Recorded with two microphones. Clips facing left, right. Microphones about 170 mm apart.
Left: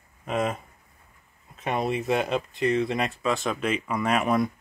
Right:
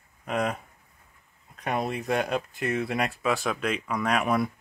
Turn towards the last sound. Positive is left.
turn(degrees=0)  # may be behind; listen again after turning